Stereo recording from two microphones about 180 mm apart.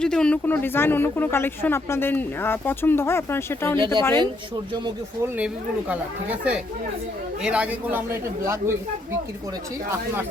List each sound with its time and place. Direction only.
0.0 s speech: 5° left (ahead or behind)
4.0 s speech: 25° right (ahead or behind)
7.4 s a man's voice: 5° right (ahead or behind)